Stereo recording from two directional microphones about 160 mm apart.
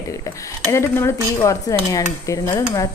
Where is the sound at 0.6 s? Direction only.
15° left (ahead or behind).